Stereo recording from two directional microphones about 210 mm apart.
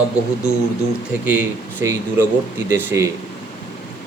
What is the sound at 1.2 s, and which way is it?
Speech, 10° right (ahead or behind).